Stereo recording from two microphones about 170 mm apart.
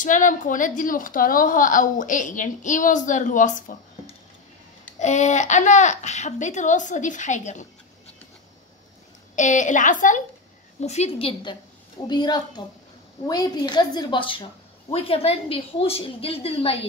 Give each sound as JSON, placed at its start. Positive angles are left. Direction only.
{"t": 0.0, "sound": "a woman's voice", "side_deg": 50}
{"t": 4.9, "sound": "a woman's voice", "side_deg": 45}
{"t": 9.3, "sound": "a woman's voice", "side_deg": 45}